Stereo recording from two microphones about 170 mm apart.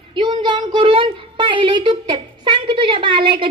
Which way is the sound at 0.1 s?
25° right (ahead or behind).